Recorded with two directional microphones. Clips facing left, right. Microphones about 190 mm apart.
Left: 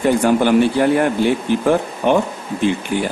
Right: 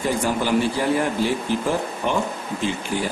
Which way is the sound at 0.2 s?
60° left (ahead or behind).